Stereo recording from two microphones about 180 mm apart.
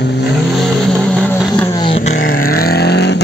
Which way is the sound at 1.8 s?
30° left (ahead or behind).